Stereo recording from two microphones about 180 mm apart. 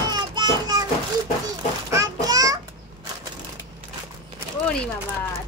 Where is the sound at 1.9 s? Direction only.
20° right (ahead or behind).